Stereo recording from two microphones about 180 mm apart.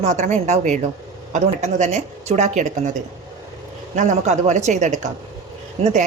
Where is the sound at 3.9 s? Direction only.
40° right (ahead or behind).